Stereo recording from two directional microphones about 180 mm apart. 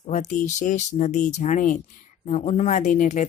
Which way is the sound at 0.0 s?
40° left (ahead or behind).